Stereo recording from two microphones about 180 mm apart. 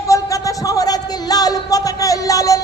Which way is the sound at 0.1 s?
20° left (ahead or behind).